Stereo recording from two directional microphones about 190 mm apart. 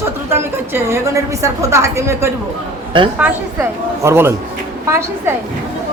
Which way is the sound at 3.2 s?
10° right (ahead or behind).